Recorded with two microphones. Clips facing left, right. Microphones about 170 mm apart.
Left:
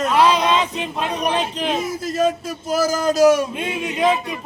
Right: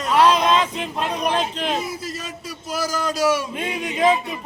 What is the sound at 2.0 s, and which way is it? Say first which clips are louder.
A man's voice: left 12 dB; 50° left (ahead or behind).